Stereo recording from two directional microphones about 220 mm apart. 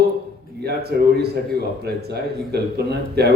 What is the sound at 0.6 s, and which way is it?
Speech, 45° right (ahead or behind).